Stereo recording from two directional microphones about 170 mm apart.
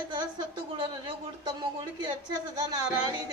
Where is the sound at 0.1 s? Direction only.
25° right (ahead or behind).